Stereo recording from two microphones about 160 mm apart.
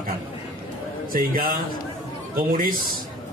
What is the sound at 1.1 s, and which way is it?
Speech, 65° right (ahead or behind).